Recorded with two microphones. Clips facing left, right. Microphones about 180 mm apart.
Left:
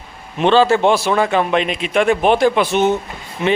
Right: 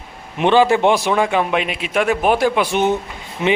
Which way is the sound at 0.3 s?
15° right (ahead or behind).